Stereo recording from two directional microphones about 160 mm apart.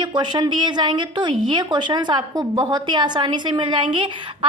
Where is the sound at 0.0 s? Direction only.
30° right (ahead or behind).